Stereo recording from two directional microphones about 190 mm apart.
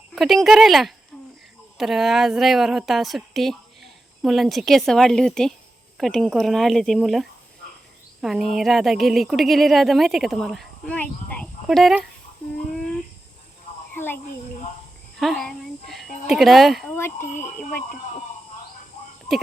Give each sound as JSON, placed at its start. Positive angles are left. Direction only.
{"t": 0.2, "sound": "a woman's voice", "side_deg": 0}
{"t": 13.9, "sound": "a sound", "side_deg": 10}
{"t": 15.2, "sound": "a woman's voice", "side_deg": 0}
{"t": 16.9, "sound": "speech", "side_deg": 10}
{"t": 17.2, "sound": "speech", "side_deg": 40}